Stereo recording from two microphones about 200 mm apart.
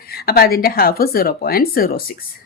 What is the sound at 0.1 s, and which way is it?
Speech, 50° left (ahead or behind).